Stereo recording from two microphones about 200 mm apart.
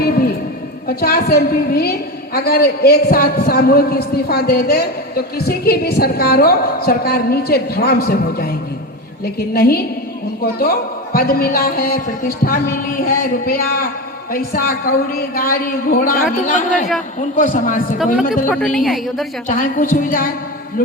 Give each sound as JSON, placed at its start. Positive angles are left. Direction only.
{"t": 0.0, "sound": "a sound", "side_deg": 50}
{"t": 0.9, "sound": "a woman's voice", "side_deg": 50}
{"t": 18.4, "sound": "a woman's voice", "side_deg": 5}
{"t": 19.5, "sound": "a woman's voice", "side_deg": 40}